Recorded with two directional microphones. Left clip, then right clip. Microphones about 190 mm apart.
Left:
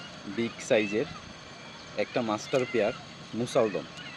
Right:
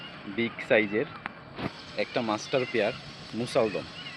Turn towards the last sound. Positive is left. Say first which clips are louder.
# even
turn(degrees=0)  # may be behind; listen again after turning